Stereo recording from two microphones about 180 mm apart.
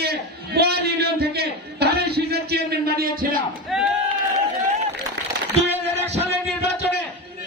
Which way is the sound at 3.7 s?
Centre (ahead or behind).